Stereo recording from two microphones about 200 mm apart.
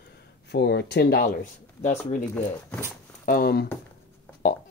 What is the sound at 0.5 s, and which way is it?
Speech, 55° left (ahead or behind).